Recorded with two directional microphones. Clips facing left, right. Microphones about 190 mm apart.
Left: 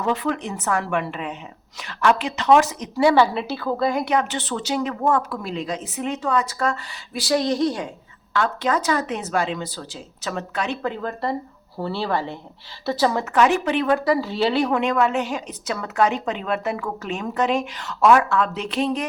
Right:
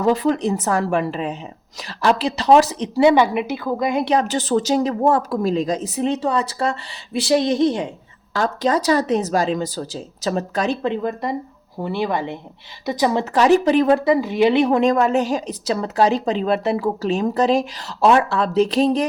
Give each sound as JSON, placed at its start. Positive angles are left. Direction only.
{"t": 0.0, "sound": "a woman's voice", "side_deg": -35}
{"t": 4.0, "sound": "a woman's voice", "side_deg": -35}
{"t": 8.3, "sound": "a woman's voice", "side_deg": -35}
{"t": 10.8, "sound": "speech", "side_deg": -20}
{"t": 13.3, "sound": "speech", "side_deg": -35}
{"t": 14.7, "sound": "a woman's voice", "side_deg": -40}